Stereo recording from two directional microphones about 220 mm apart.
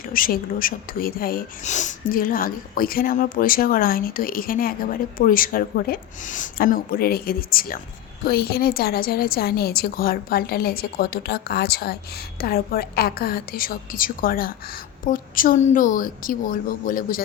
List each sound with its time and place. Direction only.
0.1 s a woman's voice: 40° left (ahead or behind)